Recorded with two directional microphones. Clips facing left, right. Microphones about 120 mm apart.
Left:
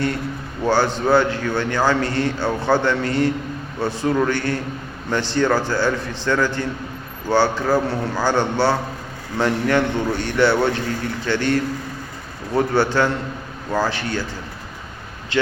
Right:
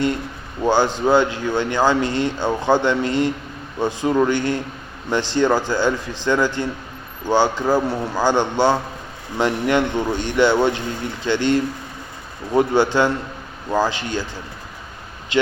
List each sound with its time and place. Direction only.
0.6 s a man's voice: 15° right (ahead or behind)
15.3 s a man's voice: 15° right (ahead or behind)